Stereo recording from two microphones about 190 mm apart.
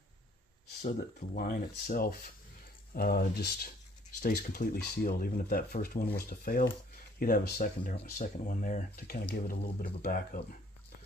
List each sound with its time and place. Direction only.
0.8 s speech: 45° left (ahead or behind)